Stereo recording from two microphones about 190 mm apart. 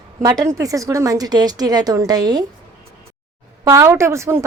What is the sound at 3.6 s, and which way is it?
Speech, 15° right (ahead or behind).